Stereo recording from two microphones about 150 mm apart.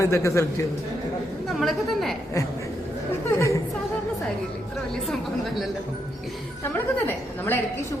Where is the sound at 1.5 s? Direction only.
Centre (ahead or behind).